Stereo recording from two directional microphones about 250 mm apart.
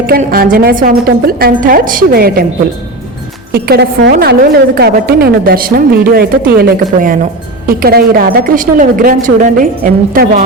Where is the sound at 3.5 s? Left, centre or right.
Right.